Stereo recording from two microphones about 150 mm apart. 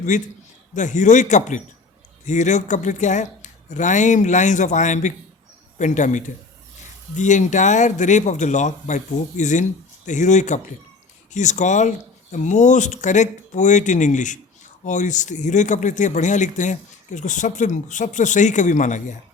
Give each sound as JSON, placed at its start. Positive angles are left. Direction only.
{"t": 0.1, "sound": "speech", "side_deg": 55}